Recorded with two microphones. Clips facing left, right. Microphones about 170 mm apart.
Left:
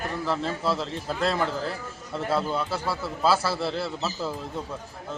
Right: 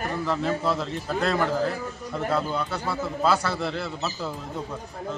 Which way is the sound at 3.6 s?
30° left (ahead or behind).